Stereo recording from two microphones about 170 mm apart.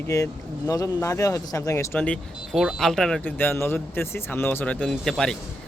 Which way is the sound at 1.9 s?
5° left (ahead or behind).